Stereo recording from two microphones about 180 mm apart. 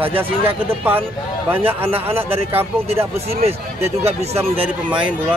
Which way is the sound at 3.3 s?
35° right (ahead or behind).